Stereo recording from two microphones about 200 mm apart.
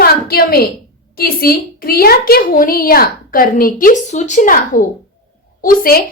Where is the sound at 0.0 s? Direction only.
50° left (ahead or behind).